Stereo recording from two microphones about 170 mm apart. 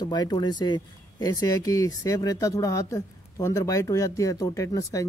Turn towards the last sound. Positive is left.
turn(degrees=20)  # may be behind; listen again after turning